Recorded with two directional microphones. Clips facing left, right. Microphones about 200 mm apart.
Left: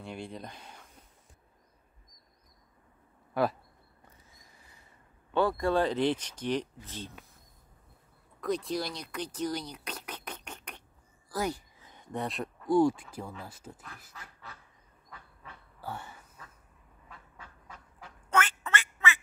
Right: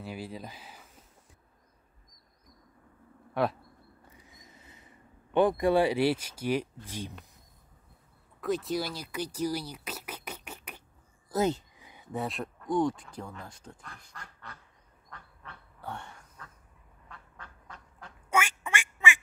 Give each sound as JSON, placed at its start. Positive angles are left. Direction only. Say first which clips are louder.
{"t": 0.0, "sound": "speech", "louder": "right 1 dB", "side_deg": -5}
{"t": 3.4, "sound": "speech", "louder": "even", "side_deg": 0}
{"t": 4.3, "sound": "a sound", "louder": "right 5 dB", "side_deg": -20}
{"t": 8.4, "sound": "speech", "louder": "right 1 dB", "side_deg": 0}
{"t": 11.2, "sound": "a sound", "louder": "right 5 dB", "side_deg": -20}
{"t": 11.9, "sound": "speech", "louder": "right 1 dB", "side_deg": -5}
{"t": 15.0, "sound": "duck", "louder": "right 1 dB", "side_deg": 5}
{"t": 18.3, "sound": "quack", "louder": "even", "side_deg": -10}